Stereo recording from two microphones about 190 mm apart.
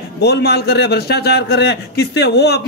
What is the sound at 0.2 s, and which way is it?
A man's voice, 60° left (ahead or behind).